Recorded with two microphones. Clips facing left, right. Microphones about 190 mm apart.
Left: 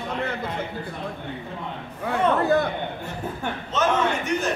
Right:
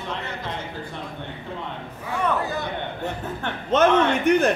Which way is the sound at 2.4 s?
55° left (ahead or behind).